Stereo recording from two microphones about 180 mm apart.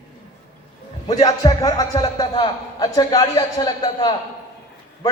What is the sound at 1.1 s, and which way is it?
A man's voice, 20° left (ahead or behind).